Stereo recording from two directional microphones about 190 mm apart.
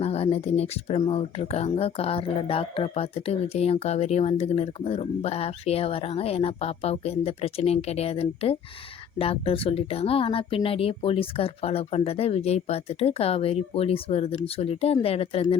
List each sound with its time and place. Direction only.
0.0 s speech: 35° left (ahead or behind)